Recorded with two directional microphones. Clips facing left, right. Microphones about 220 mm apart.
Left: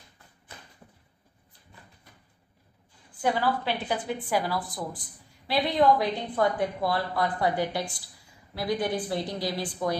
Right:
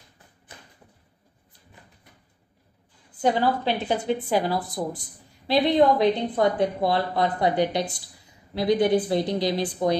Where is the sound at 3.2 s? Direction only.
25° right (ahead or behind).